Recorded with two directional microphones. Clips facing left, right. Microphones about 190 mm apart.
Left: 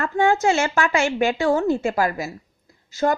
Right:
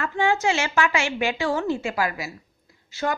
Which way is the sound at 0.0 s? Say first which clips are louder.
Left 4 dB; 45° left (ahead or behind).